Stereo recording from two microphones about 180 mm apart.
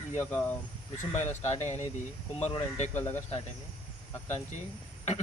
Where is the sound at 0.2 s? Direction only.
10° left (ahead or behind).